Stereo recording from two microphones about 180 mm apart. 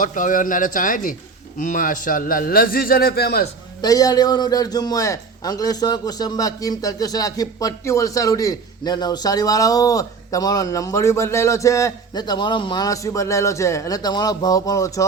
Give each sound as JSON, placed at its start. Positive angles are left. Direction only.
{"t": 0.0, "sound": "a man's voice", "side_deg": 45}
{"t": 3.8, "sound": "a man's voice", "side_deg": 20}